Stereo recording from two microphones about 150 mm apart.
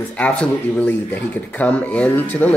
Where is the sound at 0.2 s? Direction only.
10° left (ahead or behind).